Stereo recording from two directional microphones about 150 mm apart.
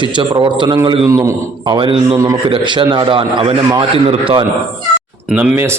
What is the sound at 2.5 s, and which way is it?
A man's voice, 30° right (ahead or behind).